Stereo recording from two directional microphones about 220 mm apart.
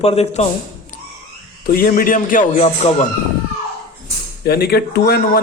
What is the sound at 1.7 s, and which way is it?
Speech, 40° left (ahead or behind).